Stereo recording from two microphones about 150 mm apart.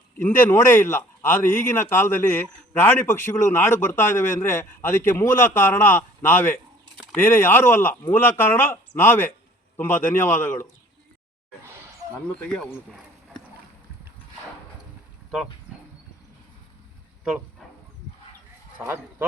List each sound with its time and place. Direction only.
0.2 s speech: 15° left (ahead or behind)
12.3 s speech: 5° left (ahead or behind)
18.8 s speech: 15° right (ahead or behind)